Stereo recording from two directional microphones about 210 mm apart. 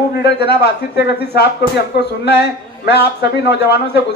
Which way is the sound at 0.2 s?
50° left (ahead or behind).